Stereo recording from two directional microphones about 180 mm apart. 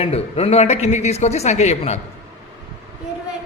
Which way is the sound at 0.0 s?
35° left (ahead or behind).